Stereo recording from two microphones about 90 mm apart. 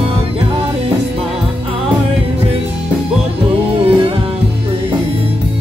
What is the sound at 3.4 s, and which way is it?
Music, 85° right.